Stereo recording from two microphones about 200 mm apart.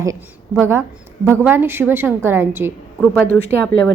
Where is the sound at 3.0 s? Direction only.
10° left (ahead or behind).